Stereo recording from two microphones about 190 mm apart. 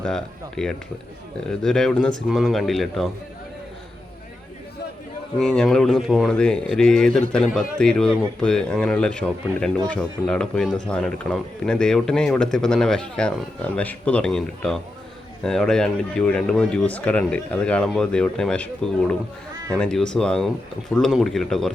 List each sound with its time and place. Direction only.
0.0 s speech: 5° left (ahead or behind)
5.4 s speech: 5° left (ahead or behind)